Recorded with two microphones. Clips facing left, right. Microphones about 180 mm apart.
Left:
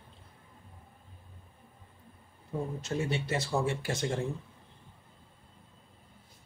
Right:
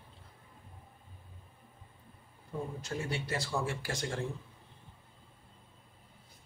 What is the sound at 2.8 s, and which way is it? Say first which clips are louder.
Speech: left 5 dB; 20° left (ahead or behind).